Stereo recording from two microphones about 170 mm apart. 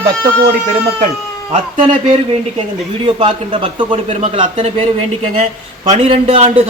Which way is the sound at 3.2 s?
30° right (ahead or behind).